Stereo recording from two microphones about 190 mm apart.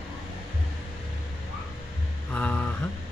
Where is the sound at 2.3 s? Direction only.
5° left (ahead or behind).